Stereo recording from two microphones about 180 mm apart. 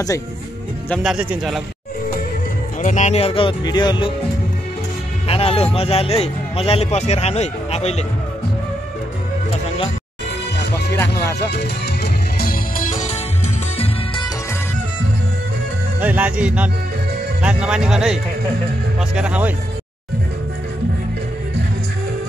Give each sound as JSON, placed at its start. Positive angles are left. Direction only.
{"t": 0.8, "sound": "speech", "side_deg": 0}
{"t": 2.8, "sound": "speech", "side_deg": 40}
{"t": 5.3, "sound": "speech", "side_deg": 30}
{"t": 11.5, "sound": "music", "side_deg": 60}
{"t": 16.0, "sound": "speech", "side_deg": -10}